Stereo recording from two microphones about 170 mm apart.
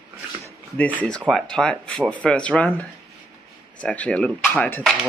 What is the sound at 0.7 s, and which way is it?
Speech, 10° left (ahead or behind).